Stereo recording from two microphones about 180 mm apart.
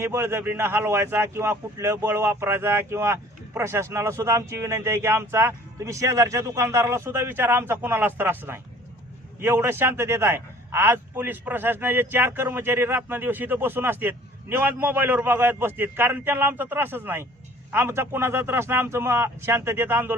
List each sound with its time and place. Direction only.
0.0 s a man's voice: 15° right (ahead or behind)